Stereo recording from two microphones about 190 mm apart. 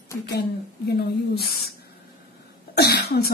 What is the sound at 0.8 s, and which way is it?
Speech, 60° left (ahead or behind).